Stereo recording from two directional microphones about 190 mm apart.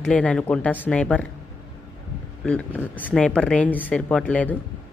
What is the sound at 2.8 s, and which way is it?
Speech, 10° left (ahead or behind).